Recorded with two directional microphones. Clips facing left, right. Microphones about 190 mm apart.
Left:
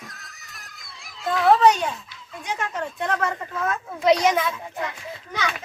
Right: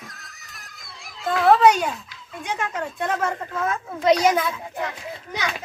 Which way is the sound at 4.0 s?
Centre (ahead or behind).